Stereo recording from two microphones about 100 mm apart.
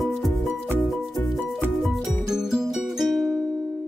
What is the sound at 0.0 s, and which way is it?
Music, centre (ahead or behind).